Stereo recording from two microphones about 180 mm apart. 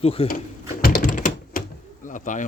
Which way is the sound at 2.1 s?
45° left (ahead or behind).